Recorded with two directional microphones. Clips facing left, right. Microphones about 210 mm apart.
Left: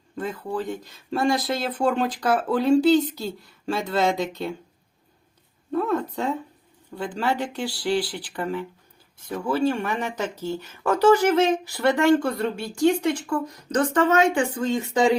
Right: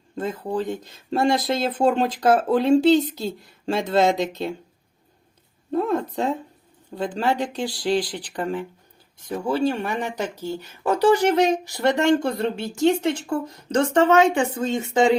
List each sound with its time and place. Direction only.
0.2 s speech: 20° right (ahead or behind)
5.7 s a sound: 30° right (ahead or behind)
6.9 s speech: 20° right (ahead or behind)
8.3 s speech: 40° right (ahead or behind)
9.3 s speech: 25° right (ahead or behind)
10.2 s speech: 15° right (ahead or behind)